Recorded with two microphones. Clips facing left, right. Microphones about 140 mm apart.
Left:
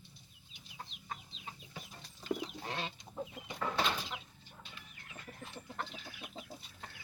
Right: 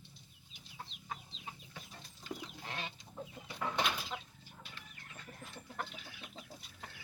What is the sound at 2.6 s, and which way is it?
Chicken, 35° left (ahead or behind).